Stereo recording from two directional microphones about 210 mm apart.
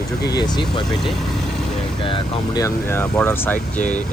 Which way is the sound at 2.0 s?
20° left (ahead or behind).